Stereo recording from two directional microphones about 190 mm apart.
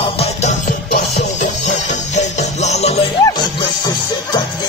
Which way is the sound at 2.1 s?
35° left (ahead or behind).